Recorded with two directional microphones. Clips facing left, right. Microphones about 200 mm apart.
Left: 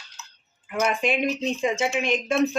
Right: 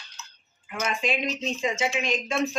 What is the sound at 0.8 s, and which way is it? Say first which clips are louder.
Speech: left 5 dB; 60° left (ahead or behind).